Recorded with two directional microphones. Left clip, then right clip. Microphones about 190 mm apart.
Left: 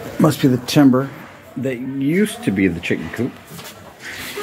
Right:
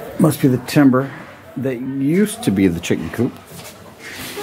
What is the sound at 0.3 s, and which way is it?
Speech, 5° right (ahead or behind).